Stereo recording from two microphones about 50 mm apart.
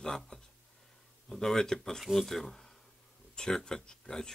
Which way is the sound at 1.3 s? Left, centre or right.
Centre.